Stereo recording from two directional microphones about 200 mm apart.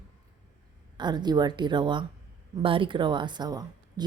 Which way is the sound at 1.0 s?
20° right (ahead or behind).